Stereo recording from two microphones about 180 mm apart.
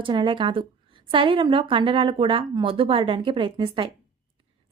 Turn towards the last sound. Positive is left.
turn(degrees=-30)  # may be behind; listen again after turning